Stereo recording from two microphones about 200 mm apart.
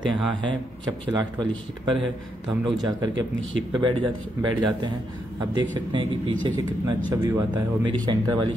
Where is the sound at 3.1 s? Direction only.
70° right (ahead or behind).